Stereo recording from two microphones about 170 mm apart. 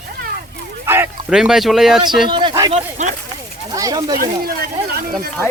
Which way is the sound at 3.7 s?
25° right (ahead or behind).